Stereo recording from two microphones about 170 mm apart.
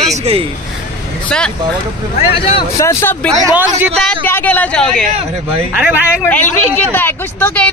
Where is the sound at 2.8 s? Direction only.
15° left (ahead or behind).